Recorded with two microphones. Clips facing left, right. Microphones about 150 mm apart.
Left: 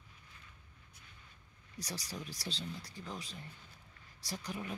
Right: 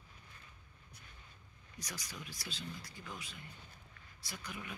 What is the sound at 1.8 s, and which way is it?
Speech, 35° left (ahead or behind).